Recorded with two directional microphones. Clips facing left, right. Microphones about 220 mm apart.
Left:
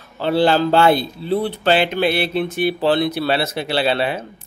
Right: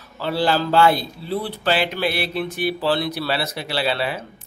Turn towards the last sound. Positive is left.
turn(degrees=25)  # may be behind; listen again after turning